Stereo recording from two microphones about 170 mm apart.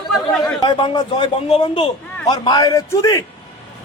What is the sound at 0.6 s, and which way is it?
A man's voice, 25° left (ahead or behind).